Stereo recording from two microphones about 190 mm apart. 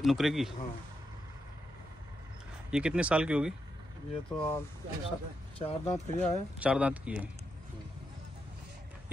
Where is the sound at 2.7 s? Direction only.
5° right (ahead or behind).